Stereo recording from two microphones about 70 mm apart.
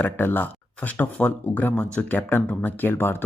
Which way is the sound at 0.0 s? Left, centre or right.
Left.